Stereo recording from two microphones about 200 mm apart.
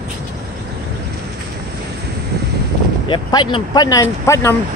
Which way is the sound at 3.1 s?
25° left (ahead or behind).